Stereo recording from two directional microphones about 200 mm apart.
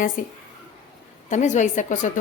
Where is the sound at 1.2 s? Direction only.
35° left (ahead or behind).